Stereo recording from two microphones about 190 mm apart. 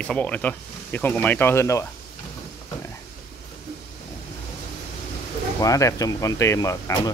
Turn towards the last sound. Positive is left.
turn(degrees=15)  # may be behind; listen again after turning